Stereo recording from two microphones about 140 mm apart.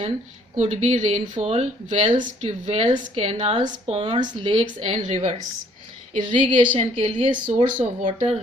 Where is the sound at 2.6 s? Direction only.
40° right (ahead or behind).